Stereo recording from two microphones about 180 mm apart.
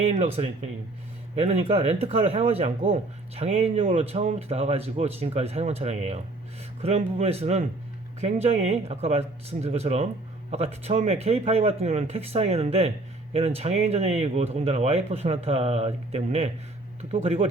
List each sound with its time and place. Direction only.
0.1 s speech: 40° right (ahead or behind)